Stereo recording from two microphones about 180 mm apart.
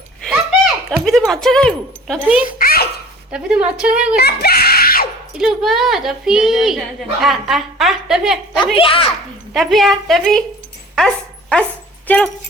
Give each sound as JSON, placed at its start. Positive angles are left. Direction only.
{"t": 0.3, "sound": "a sound", "side_deg": 0}
{"t": 1.3, "sound": "a woman's voice", "side_deg": 0}
{"t": 2.2, "sound": "a woman's voice", "side_deg": -5}
{"t": 2.6, "sound": "a sound", "side_deg": 55}
{"t": 3.3, "sound": "a woman's voice", "side_deg": -5}
{"t": 4.2, "sound": "screaming", "side_deg": 60}
{"t": 5.4, "sound": "a woman's voice", "side_deg": 0}
{"t": 8.8, "sound": "speech", "side_deg": 30}
{"t": 9.5, "sound": "a woman's voice", "side_deg": 0}
{"t": 10.9, "sound": "dog", "side_deg": 5}
{"t": 12.0, "sound": "speech", "side_deg": 5}